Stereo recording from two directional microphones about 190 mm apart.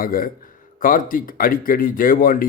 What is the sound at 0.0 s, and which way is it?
Speech, 50° left (ahead or behind).